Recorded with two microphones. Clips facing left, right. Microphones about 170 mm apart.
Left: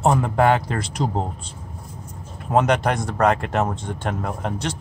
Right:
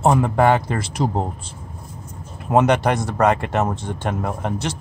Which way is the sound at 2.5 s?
5° right (ahead or behind).